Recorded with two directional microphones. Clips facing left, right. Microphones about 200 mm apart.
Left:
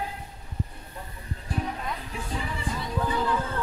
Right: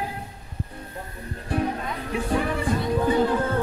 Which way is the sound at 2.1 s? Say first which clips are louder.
Right 9 dB; 65° right (ahead or behind).